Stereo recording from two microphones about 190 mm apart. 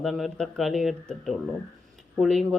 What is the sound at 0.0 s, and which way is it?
Speech, centre (ahead or behind).